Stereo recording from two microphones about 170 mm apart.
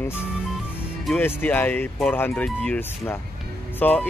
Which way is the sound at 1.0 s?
10° left (ahead or behind).